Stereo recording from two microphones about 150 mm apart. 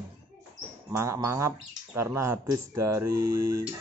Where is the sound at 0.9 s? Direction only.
20° right (ahead or behind).